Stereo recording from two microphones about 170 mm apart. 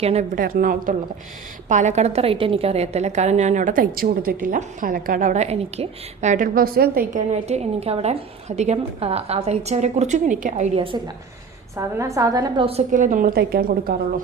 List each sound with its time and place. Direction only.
0.0 s a woman's voice: 40° right (ahead or behind)
10.9 s a woman's voice: 25° right (ahead or behind)
12.6 s a woman's voice: 40° right (ahead or behind); by 13.9 s 60° right (ahead or behind)